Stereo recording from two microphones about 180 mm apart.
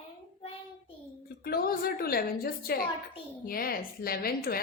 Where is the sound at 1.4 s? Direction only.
55° left (ahead or behind).